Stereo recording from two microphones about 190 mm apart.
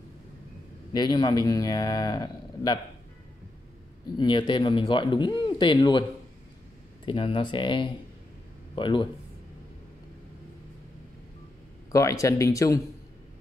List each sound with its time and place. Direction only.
0.9 s speech: 20° left (ahead or behind)
4.2 s speech: 25° left (ahead or behind)
7.1 s speech: 25° left (ahead or behind)
11.9 s speech: 15° left (ahead or behind)